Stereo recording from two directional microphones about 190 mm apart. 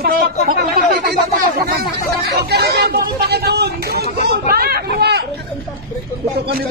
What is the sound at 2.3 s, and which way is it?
Speech, 60° right (ahead or behind).